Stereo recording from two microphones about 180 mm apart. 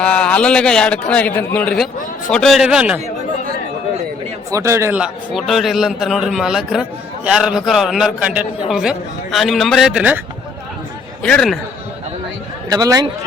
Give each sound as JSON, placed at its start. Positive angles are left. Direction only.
{"t": 0.0, "sound": "a man's voice", "side_deg": 5}
{"t": 4.5, "sound": "a man's voice", "side_deg": -15}
{"t": 11.2, "sound": "a man's voice", "side_deg": 5}
{"t": 12.6, "sound": "speech", "side_deg": -20}